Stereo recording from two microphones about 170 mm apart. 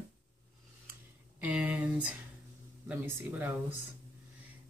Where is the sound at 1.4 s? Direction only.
10° right (ahead or behind).